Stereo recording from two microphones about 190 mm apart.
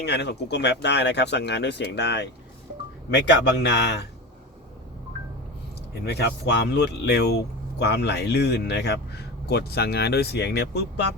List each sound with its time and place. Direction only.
0.0 s speech: 65° left (ahead or behind)
6.1 s speech: 65° left (ahead or behind)